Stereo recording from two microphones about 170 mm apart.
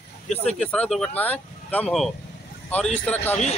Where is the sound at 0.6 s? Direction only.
5° left (ahead or behind).